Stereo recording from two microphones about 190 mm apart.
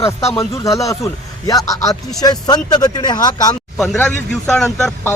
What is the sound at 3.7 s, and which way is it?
Speech, centre (ahead or behind).